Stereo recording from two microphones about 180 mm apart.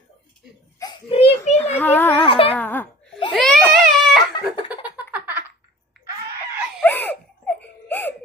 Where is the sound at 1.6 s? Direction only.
10° left (ahead or behind).